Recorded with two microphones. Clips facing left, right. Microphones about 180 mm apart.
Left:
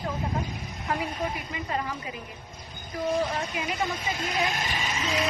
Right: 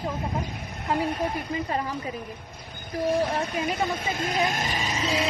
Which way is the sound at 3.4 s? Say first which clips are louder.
Right 3 dB; 55° right (ahead or behind).